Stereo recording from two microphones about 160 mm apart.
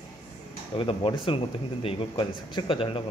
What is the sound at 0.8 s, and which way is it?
Speech, 35° left (ahead or behind).